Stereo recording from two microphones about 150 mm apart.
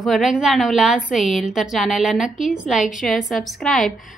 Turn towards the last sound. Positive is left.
turn(degrees=0)  # may be behind; listen again after turning